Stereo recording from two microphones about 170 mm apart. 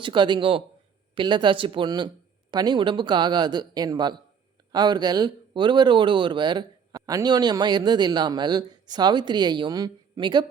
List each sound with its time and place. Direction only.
0.0 s a man's voice: 30° right (ahead or behind)